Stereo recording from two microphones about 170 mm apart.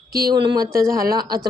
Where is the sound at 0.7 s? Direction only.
60° right (ahead or behind).